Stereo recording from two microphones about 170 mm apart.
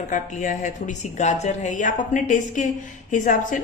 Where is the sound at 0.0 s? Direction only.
45° left (ahead or behind).